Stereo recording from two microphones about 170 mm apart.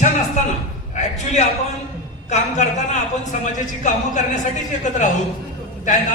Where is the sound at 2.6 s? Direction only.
45° left (ahead or behind).